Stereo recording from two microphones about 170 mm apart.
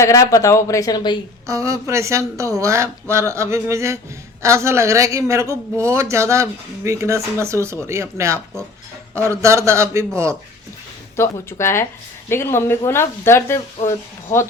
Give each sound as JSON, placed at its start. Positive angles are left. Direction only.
{"t": 0.0, "sound": "speech", "side_deg": 20}
{"t": 1.5, "sound": "speech", "side_deg": -20}
{"t": 11.2, "sound": "speech", "side_deg": 15}